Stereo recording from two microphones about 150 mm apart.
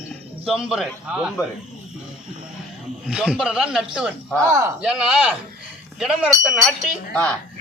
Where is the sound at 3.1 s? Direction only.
5° right (ahead or behind).